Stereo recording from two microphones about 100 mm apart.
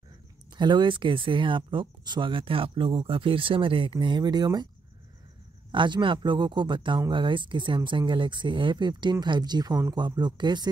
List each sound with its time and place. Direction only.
0.5 s speech: 50° right (ahead or behind)
5.7 s speech: 50° right (ahead or behind)